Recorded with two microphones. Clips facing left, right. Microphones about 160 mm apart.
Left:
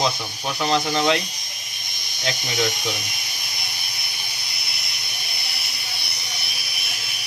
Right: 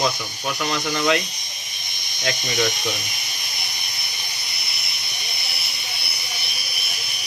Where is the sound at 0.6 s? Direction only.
30° left (ahead or behind).